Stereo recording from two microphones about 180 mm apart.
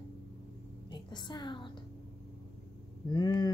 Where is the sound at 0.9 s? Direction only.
25° left (ahead or behind).